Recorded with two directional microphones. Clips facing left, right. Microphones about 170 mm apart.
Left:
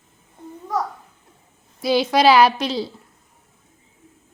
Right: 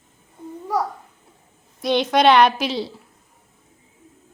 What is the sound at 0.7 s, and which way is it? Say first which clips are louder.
Babbling: right 1 dB; 10° right (ahead or behind).